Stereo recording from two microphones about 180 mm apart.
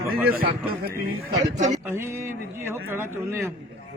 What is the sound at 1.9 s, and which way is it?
Speech, 15° right (ahead or behind).